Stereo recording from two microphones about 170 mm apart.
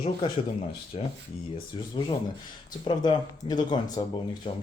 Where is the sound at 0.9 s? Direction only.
35° left (ahead or behind).